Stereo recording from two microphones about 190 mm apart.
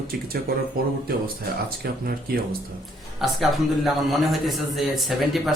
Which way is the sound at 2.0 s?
50° right (ahead or behind).